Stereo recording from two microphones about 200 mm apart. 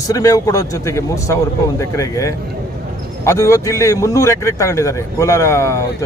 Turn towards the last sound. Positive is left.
turn(degrees=15)  # may be behind; listen again after turning